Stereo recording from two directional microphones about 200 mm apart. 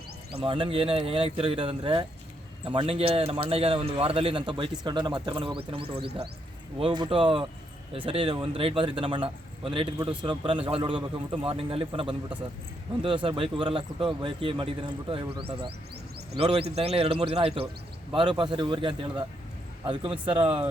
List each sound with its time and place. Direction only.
0.3 s speech: 25° right (ahead or behind)